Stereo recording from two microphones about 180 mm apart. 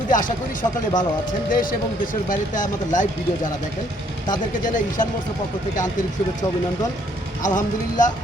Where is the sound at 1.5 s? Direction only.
50° left (ahead or behind).